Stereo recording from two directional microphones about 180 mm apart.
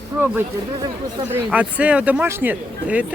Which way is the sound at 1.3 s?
5° right (ahead or behind).